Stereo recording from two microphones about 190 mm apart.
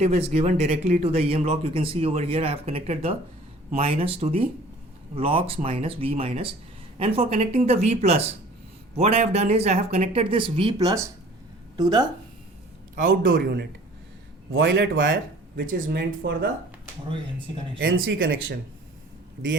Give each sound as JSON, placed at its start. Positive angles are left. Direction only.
{"t": 0.0, "sound": "speech", "side_deg": -35}
{"t": 13.0, "sound": "speech", "side_deg": -45}
{"t": 14.5, "sound": "a man's voice", "side_deg": -85}
{"t": 15.5, "sound": "speech", "side_deg": -50}
{"t": 17.7, "sound": "speech", "side_deg": -90}